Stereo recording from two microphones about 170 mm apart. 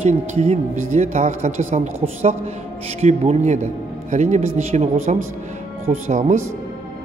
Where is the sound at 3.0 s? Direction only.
40° right (ahead or behind).